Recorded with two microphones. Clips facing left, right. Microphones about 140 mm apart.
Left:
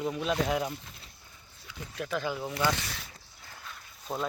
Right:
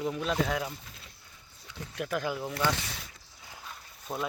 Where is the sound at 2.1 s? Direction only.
10° right (ahead or behind).